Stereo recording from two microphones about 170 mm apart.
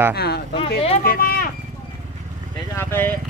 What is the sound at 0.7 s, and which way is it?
Speech, 35° left (ahead or behind).